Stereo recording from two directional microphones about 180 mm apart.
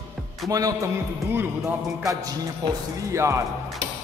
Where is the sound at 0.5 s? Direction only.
20° right (ahead or behind).